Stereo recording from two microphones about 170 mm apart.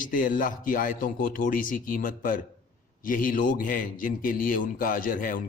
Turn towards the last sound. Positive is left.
turn(degrees=55)  # may be behind; listen again after turning